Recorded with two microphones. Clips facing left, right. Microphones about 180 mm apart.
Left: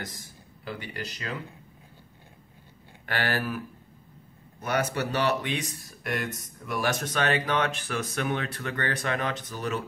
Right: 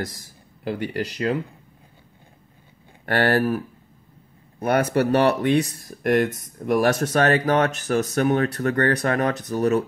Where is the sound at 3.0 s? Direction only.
50° right (ahead or behind).